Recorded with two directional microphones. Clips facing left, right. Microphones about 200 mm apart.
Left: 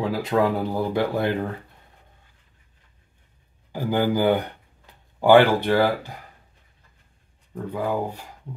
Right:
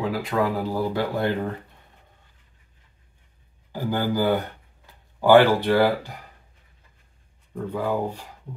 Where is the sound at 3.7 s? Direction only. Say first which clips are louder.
Left 3 dB; 15° left (ahead or behind).